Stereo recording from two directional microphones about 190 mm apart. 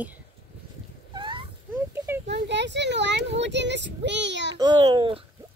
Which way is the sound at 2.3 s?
65° right (ahead or behind).